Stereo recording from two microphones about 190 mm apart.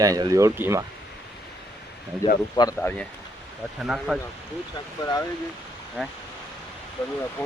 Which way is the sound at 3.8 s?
5° right (ahead or behind).